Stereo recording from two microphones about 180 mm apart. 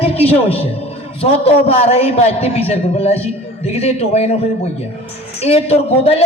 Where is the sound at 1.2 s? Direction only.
35° left (ahead or behind).